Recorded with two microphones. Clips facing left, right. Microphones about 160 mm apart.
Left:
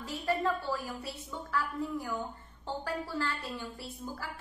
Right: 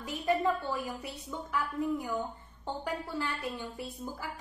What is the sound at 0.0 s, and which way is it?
A woman's voice, 20° right (ahead or behind).